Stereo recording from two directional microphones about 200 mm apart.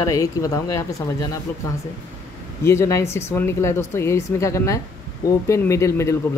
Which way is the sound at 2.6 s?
15° left (ahead or behind).